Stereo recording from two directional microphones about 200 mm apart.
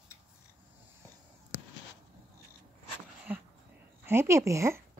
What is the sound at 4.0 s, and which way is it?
Speech, 10° right (ahead or behind).